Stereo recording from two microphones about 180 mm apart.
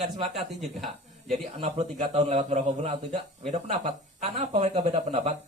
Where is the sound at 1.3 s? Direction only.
35° right (ahead or behind).